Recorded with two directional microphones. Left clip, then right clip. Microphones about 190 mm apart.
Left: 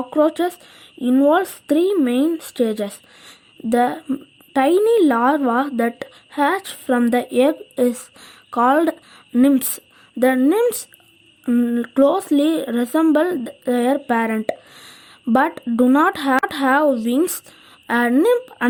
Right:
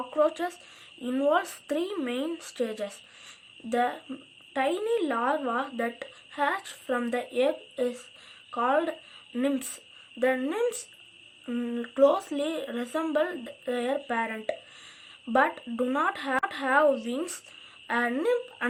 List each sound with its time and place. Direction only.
0.1 s a woman's voice: 45° left (ahead or behind)